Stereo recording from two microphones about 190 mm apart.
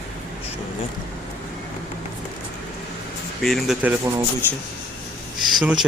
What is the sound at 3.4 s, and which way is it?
Speech, centre (ahead or behind).